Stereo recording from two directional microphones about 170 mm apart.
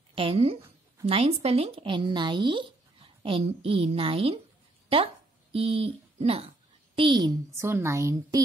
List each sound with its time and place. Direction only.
0.1 s a woman's voice: 35° right (ahead or behind)
7.5 s a woman's voice: 15° right (ahead or behind)